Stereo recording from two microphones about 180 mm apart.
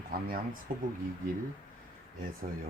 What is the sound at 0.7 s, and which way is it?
Speech, 55° right (ahead or behind).